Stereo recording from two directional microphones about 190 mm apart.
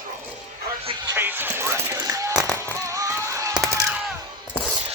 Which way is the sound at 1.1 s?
10° right (ahead or behind).